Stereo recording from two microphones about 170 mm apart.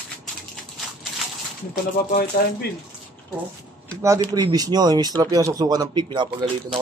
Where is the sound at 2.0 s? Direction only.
65° left (ahead or behind).